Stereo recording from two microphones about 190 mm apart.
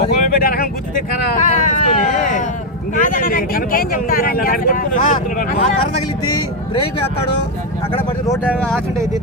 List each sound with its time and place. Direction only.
0.0 s vehicle: 50° left (ahead or behind)
3.0 s speech: 45° left (ahead or behind)
8.3 s speech: 5° left (ahead or behind)